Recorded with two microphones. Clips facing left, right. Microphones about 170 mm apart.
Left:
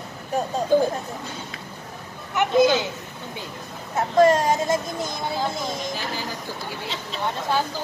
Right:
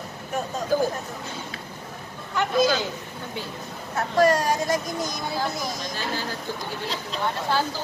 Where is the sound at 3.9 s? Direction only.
25° left (ahead or behind).